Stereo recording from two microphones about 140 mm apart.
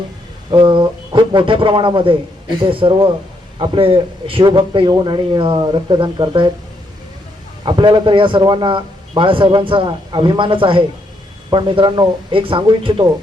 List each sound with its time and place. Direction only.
0.5 s a man's voice: 35° right (ahead or behind)
7.6 s a man's voice: 35° right (ahead or behind)